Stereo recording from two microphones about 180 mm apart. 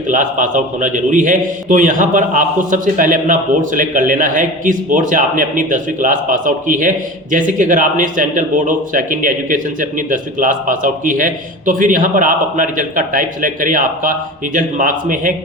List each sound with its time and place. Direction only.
0.1 s a man's voice: 45° right (ahead or behind)